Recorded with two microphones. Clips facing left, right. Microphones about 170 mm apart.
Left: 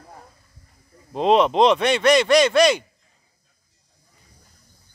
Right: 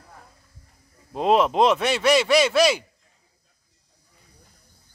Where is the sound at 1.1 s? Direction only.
5° right (ahead or behind).